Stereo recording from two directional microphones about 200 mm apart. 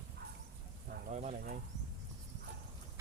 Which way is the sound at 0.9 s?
35° right (ahead or behind).